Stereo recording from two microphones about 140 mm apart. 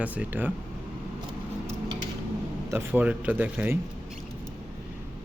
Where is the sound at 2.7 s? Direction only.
15° right (ahead or behind).